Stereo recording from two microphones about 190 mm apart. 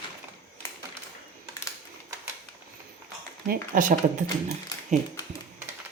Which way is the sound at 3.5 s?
45° right (ahead or behind).